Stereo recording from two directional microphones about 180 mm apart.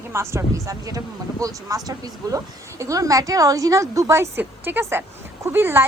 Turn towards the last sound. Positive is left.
turn(degrees=-10)  # may be behind; listen again after turning